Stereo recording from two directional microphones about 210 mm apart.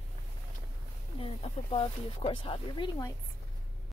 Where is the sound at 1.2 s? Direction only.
25° left (ahead or behind).